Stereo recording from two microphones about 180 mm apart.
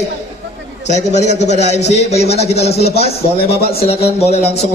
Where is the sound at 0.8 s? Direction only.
40° left (ahead or behind).